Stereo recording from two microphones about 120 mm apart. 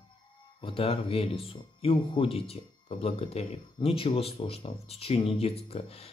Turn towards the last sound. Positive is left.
turn(degrees=55)  # may be behind; listen again after turning